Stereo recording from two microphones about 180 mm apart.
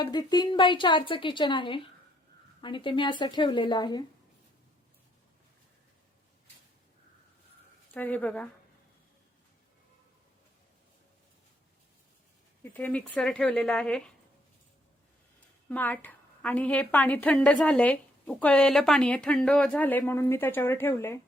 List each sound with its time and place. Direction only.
0.0 s a woman's voice: 20° left (ahead or behind)
7.9 s a woman's voice: 10° left (ahead or behind)
12.6 s speech: 10° left (ahead or behind)
15.7 s a woman's voice: 10° left (ahead or behind)